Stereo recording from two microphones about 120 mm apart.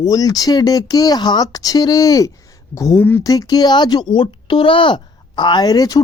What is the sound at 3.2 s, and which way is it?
Speech, 30° left (ahead or behind).